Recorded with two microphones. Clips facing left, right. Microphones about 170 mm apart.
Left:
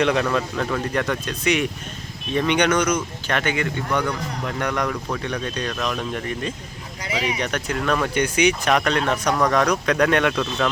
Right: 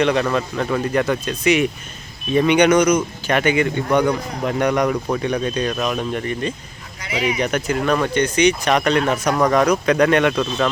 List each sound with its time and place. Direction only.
0.0 s speech: centre (ahead or behind)
8.1 s speech: 10° left (ahead or behind)